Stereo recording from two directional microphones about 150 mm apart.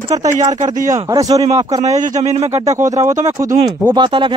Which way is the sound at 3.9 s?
30° right (ahead or behind).